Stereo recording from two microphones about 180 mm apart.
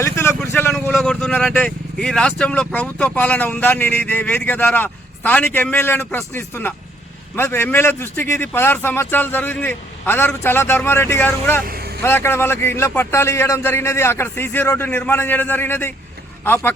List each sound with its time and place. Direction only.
0.0 s speech: 15° left (ahead or behind)
11.6 s vehicle: 55° right (ahead or behind)
12.0 s speech: 15° left (ahead or behind)